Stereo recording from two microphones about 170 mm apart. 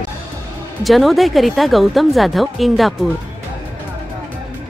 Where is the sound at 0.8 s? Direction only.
Centre (ahead or behind).